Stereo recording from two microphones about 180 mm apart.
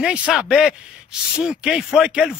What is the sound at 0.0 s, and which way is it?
A man's voice, 5° right (ahead or behind).